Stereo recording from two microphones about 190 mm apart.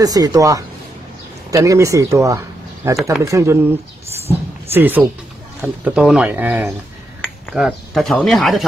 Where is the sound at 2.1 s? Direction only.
15° right (ahead or behind).